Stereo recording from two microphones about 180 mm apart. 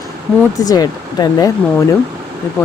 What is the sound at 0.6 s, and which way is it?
Speech, 20° left (ahead or behind).